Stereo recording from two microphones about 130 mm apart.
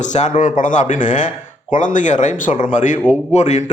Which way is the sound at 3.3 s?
65° left (ahead or behind).